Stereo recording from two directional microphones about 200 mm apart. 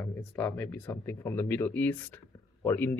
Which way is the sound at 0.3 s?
10° left (ahead or behind).